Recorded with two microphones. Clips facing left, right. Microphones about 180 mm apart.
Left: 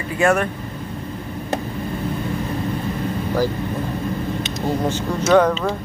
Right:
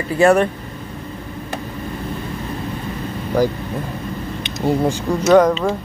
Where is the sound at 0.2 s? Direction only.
35° right (ahead or behind).